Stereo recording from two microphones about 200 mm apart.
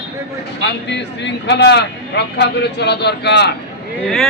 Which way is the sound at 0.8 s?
60° left (ahead or behind).